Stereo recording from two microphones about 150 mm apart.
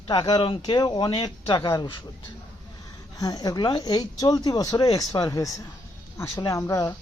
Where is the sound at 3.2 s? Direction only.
25° left (ahead or behind).